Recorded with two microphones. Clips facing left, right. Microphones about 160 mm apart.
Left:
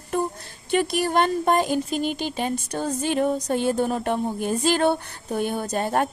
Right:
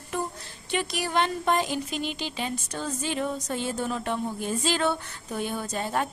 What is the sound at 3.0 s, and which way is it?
A woman's voice, 50° left (ahead or behind).